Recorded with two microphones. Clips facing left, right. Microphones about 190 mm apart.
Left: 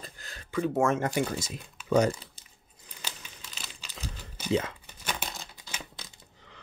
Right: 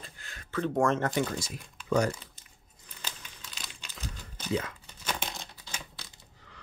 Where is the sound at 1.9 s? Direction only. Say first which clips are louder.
Left 3 dB; 20° left (ahead or behind).